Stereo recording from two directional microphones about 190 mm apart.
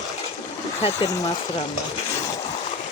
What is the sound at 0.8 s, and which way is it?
Speech, 30° left (ahead or behind).